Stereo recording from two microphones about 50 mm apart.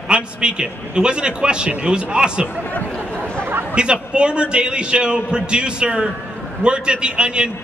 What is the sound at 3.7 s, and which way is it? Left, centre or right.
A man's voice, centre.